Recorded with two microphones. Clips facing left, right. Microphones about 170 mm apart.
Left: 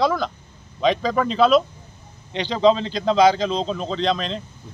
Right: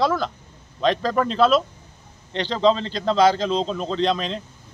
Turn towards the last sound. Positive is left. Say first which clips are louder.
# even
turn(degrees=0)  # may be behind; listen again after turning